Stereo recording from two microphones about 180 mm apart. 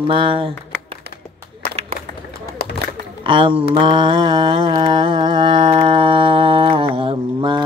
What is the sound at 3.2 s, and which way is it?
Speech, 30° right (ahead or behind).